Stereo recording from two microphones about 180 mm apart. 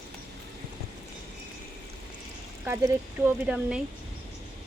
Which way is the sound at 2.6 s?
15° right (ahead or behind).